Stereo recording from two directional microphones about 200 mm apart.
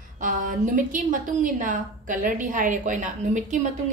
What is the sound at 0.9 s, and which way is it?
A woman's voice, 40° right (ahead or behind).